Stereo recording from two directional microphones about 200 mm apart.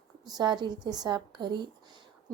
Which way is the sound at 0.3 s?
20° right (ahead or behind).